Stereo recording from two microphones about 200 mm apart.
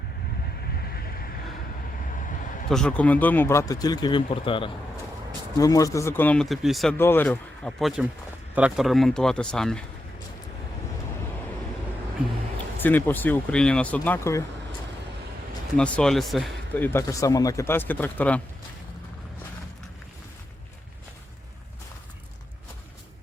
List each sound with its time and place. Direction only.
0.8 s vehicle: 50° left (ahead or behind)
2.6 s speech: 5° left (ahead or behind)
6.9 s speech: 10° left (ahead or behind)
12.8 s speech: 10° left (ahead or behind)
15.8 s speech: 5° left (ahead or behind)